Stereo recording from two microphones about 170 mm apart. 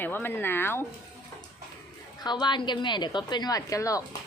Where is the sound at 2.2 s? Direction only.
25° left (ahead or behind).